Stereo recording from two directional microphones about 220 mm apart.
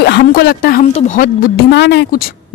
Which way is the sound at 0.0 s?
45° left (ahead or behind).